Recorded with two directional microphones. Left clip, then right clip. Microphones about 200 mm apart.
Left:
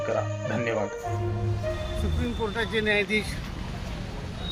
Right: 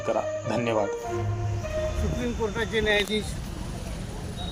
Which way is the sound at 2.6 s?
Centre (ahead or behind).